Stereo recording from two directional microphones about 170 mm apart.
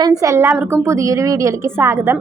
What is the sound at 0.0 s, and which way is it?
A woman's voice, 20° right (ahead or behind).